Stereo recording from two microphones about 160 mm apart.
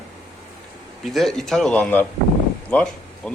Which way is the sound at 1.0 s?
Centre (ahead or behind).